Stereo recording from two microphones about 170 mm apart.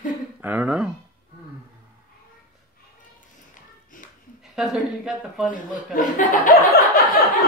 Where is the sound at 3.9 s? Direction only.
55° left (ahead or behind).